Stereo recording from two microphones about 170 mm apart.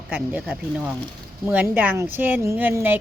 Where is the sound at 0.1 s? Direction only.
10° right (ahead or behind).